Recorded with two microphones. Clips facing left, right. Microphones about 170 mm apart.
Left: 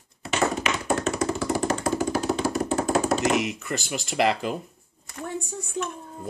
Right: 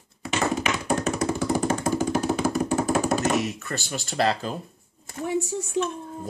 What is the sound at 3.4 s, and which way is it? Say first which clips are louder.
Speech: left 1 dB; 15° left (ahead or behind).